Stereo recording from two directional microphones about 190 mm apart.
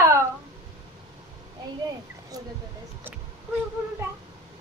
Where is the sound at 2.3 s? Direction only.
20° right (ahead or behind).